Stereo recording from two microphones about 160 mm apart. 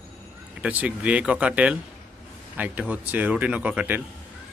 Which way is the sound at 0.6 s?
10° right (ahead or behind).